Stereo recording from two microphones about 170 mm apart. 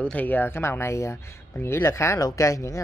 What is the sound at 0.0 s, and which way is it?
Speech, 10° left (ahead or behind).